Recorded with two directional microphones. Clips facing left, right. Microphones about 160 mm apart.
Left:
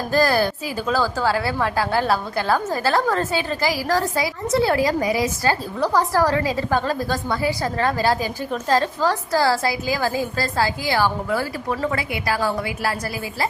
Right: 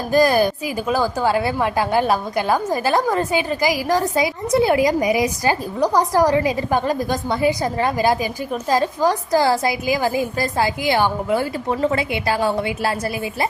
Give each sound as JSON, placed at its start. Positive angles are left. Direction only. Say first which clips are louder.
{"t": 0.1, "sound": "a woman's voice", "louder": "right 4 dB", "side_deg": -15}